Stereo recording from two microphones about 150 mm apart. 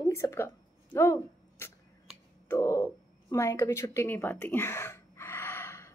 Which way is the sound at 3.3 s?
20° left (ahead or behind).